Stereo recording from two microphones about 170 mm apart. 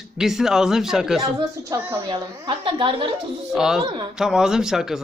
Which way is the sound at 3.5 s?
5° right (ahead or behind).